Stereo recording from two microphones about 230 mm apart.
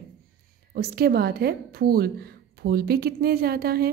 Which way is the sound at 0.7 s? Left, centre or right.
Right.